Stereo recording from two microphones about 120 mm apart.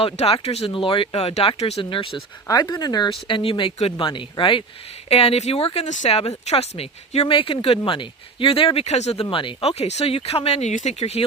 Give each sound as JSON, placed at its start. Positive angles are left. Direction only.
{"t": 0.0, "sound": "speech", "side_deg": 55}
{"t": 1.8, "sound": "speech", "side_deg": 45}
{"t": 2.5, "sound": "speech", "side_deg": 35}
{"t": 5.0, "sound": "speech", "side_deg": 60}
{"t": 9.3, "sound": "speech", "side_deg": 45}